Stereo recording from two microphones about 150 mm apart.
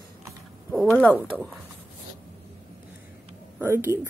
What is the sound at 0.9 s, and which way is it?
Speech, 5° left (ahead or behind).